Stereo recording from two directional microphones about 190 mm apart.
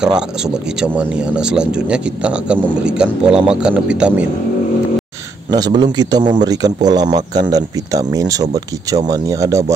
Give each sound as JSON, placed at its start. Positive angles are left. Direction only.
{"t": 0.7, "sound": "a man's voice", "side_deg": -5}
{"t": 5.5, "sound": "speech", "side_deg": -20}